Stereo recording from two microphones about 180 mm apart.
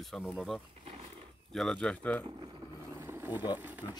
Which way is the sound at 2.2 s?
25° right (ahead or behind).